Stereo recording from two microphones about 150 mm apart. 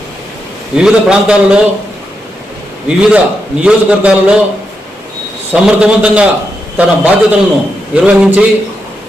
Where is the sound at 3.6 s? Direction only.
5° right (ahead or behind).